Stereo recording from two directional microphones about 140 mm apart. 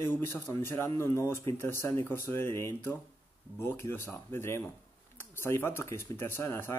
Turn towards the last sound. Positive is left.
turn(degrees=20)  # may be behind; listen again after turning